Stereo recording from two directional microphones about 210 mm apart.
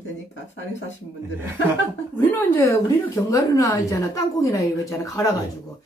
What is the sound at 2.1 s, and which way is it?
A woman's voice, 10° left (ahead or behind).